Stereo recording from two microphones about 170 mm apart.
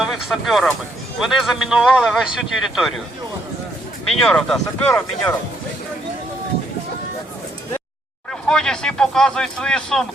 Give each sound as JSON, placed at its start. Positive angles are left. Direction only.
{"t": 0.0, "sound": "speech", "side_deg": 0}
{"t": 4.0, "sound": "speech", "side_deg": 5}
{"t": 8.3, "sound": "speech", "side_deg": 5}